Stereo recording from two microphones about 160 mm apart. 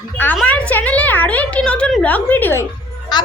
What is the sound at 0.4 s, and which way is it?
A woman's voice, 10° left (ahead or behind).